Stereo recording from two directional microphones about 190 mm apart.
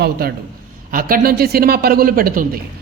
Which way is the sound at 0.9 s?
50° right (ahead or behind).